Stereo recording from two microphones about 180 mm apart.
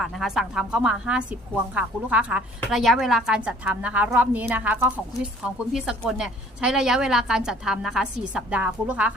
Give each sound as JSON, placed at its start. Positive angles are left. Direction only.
{"t": 0.0, "sound": "a woman's voice", "side_deg": 0}